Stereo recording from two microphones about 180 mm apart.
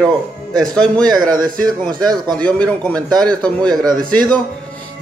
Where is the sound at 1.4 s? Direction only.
20° right (ahead or behind).